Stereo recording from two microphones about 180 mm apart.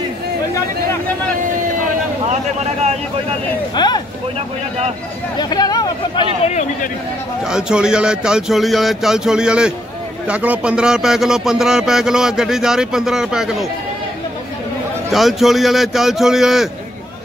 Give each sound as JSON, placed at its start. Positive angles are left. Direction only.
{"t": 3.7, "sound": "speech", "side_deg": 25}
{"t": 5.4, "sound": "speech", "side_deg": 20}
{"t": 6.4, "sound": "a man's voice", "side_deg": 40}
{"t": 7.4, "sound": "a man's voice", "side_deg": -5}
{"t": 15.0, "sound": "a man's voice", "side_deg": 0}